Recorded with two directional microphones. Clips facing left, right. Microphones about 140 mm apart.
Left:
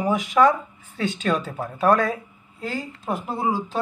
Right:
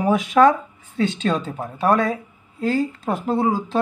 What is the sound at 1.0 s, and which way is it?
Speech, 25° right (ahead or behind).